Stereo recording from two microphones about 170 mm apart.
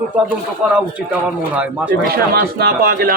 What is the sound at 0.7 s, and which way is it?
Speech, 5° right (ahead or behind).